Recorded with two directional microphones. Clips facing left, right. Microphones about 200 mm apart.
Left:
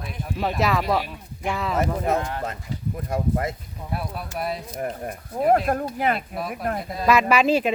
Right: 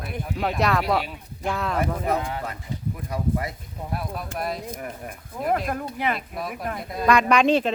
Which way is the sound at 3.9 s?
Centre (ahead or behind).